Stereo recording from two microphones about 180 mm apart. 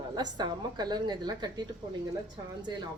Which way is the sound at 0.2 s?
25° right (ahead or behind).